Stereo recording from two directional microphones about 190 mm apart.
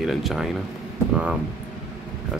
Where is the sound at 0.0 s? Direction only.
Centre (ahead or behind).